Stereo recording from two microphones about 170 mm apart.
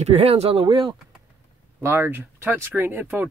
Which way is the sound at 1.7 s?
15° right (ahead or behind).